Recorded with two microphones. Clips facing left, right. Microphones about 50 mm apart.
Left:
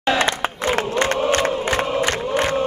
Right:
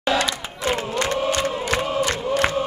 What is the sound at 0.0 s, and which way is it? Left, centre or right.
Crowd, left.